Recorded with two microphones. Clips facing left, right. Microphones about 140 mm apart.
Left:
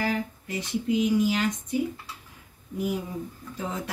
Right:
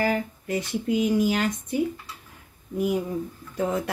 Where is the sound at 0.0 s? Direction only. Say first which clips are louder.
Right 3 dB; 55° right (ahead or behind).